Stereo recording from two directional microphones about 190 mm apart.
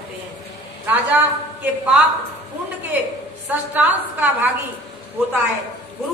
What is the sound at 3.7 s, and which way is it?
Speech, 10° right (ahead or behind).